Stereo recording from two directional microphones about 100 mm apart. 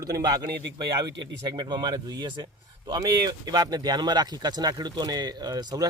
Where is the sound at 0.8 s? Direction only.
45° right (ahead or behind).